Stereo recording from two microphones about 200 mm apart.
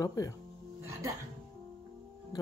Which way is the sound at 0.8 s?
15° right (ahead or behind).